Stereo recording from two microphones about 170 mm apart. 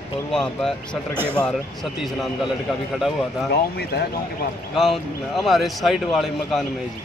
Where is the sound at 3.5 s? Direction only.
70° left (ahead or behind).